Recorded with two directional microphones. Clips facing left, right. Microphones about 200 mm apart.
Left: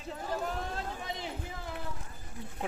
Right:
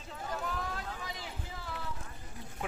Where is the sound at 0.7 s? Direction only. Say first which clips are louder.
Left 3 dB; 25° left (ahead or behind).